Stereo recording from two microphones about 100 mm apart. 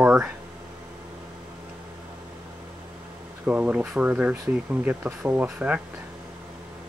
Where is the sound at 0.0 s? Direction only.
10° right (ahead or behind).